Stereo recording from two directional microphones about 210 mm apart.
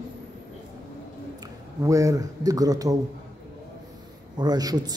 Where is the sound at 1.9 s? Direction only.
15° right (ahead or behind).